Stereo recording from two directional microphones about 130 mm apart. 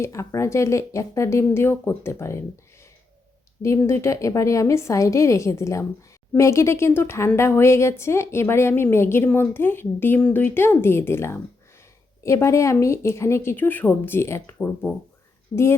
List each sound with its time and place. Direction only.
0.0 s a woman's voice: 25° left (ahead or behind)
3.6 s a woman's voice: 20° left (ahead or behind)
15.5 s a woman's voice: 25° left (ahead or behind)